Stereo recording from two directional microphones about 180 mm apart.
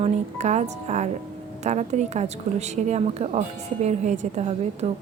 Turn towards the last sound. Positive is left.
turn(degrees=-35)  # may be behind; listen again after turning